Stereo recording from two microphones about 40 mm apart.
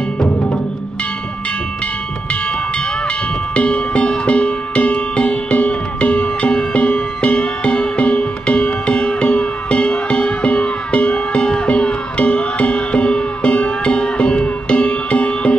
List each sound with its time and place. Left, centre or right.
3.5 s music: left